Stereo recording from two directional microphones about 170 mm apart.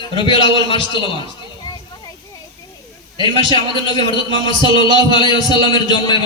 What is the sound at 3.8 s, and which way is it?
A man's voice, 25° left (ahead or behind).